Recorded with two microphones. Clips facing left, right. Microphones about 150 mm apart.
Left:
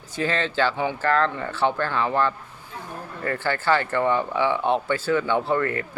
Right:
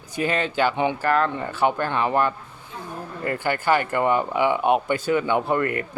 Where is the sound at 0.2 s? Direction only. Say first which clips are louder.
Right 1 dB; 15° right (ahead or behind).